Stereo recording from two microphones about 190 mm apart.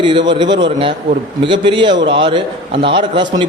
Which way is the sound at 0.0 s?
25° right (ahead or behind).